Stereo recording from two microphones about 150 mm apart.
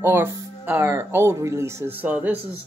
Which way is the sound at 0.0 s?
15° right (ahead or behind).